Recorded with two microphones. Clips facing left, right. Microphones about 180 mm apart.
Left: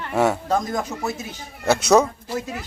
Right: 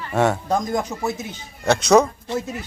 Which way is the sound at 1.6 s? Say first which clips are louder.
Right 1 dB; 5° left (ahead or behind).